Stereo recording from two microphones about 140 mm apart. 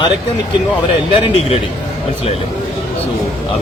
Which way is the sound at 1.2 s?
45° left (ahead or behind).